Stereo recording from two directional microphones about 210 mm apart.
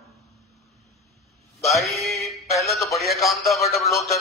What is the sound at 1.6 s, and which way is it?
Music, centre (ahead or behind).